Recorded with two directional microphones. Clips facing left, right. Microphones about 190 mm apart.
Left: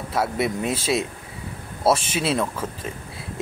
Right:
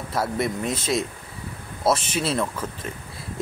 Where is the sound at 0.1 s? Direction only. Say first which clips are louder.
Left 2 dB; centre (ahead or behind).